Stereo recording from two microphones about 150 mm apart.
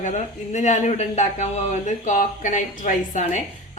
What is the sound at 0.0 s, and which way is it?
A woman's voice, 50° left (ahead or behind).